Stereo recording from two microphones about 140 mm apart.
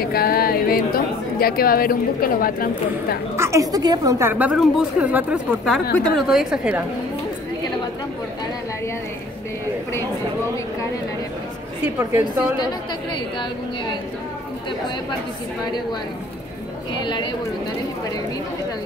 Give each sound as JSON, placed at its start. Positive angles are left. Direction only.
{"t": 0.0, "sound": "speech", "side_deg": 90}
{"t": 3.3, "sound": "a woman's voice", "side_deg": -20}
{"t": 12.0, "sound": "speech", "side_deg": -15}
{"t": 17.0, "sound": "speech", "side_deg": 35}